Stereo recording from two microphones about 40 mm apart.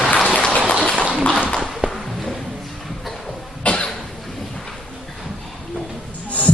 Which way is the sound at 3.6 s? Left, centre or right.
Left.